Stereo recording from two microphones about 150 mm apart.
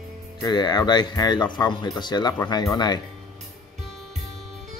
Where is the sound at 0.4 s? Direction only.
30° left (ahead or behind).